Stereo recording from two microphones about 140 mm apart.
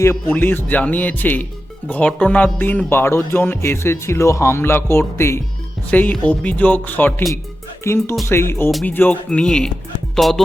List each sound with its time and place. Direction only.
0.3 s speech: 15° left (ahead or behind)
10.2 s music: centre (ahead or behind)